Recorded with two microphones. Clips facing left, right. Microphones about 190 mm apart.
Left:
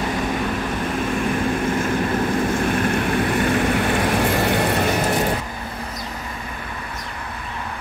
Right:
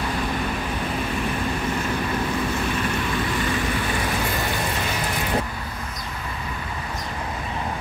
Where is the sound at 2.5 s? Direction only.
50° left (ahead or behind).